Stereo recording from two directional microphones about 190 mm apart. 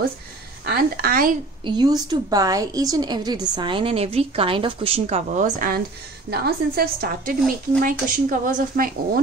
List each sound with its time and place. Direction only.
0.7 s speech: 50° right (ahead or behind)
1.6 s a woman's voice: 20° right (ahead or behind); by 5.8 s 45° right (ahead or behind)
6.3 s a woman's voice: 55° right (ahead or behind)